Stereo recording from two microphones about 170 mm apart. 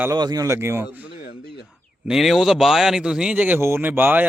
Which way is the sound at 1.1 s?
35° left (ahead or behind).